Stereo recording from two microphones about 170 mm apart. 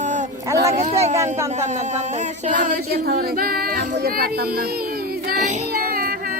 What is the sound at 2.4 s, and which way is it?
Speech, 45° right (ahead or behind).